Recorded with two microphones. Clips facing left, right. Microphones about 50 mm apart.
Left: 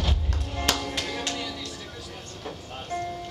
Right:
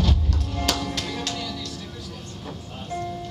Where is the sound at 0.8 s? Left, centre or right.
Centre.